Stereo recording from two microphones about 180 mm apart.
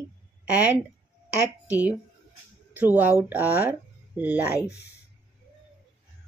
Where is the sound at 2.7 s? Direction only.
10° right (ahead or behind).